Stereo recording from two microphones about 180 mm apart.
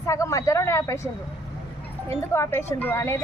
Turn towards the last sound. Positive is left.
turn(degrees=15)  # may be behind; listen again after turning